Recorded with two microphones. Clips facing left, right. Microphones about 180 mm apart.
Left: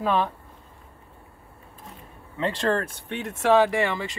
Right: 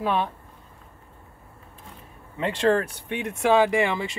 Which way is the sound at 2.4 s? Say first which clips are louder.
Right 3 dB; 15° right (ahead or behind).